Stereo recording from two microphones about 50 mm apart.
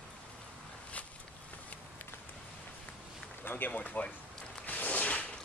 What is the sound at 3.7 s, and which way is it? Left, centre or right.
Speech, left.